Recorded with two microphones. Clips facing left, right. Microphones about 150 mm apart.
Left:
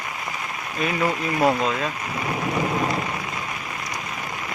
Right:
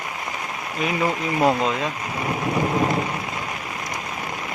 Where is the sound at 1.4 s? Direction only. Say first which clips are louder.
Right 1 dB; 20° right (ahead or behind).